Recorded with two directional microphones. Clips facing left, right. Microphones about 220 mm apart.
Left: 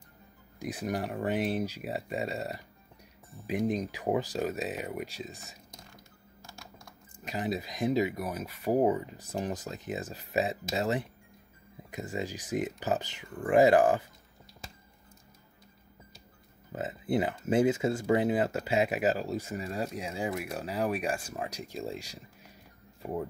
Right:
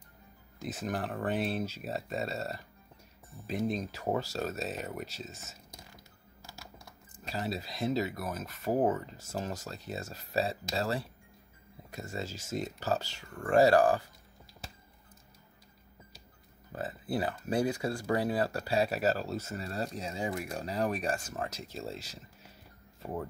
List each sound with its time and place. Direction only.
0.6 s speech: 15° left (ahead or behind)
5.9 s typing: 5° right (ahead or behind)
7.2 s speech: 15° left (ahead or behind)
16.7 s speech: 20° left (ahead or behind)